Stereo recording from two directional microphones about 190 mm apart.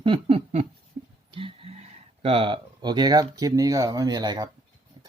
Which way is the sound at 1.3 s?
30° right (ahead or behind).